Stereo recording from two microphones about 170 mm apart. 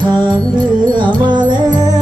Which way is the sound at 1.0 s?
25° right (ahead or behind).